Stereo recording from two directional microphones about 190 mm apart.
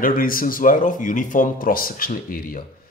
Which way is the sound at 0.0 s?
45° left (ahead or behind).